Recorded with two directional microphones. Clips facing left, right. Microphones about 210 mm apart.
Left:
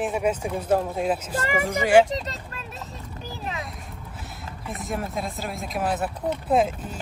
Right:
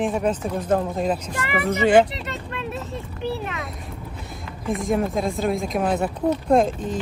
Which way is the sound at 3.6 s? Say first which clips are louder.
Right 4 dB; centre (ahead or behind).